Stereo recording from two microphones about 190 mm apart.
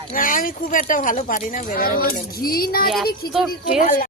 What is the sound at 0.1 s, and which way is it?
Speech, 45° left (ahead or behind).